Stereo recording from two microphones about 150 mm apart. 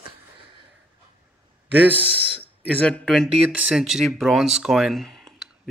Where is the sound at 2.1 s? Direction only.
35° right (ahead or behind).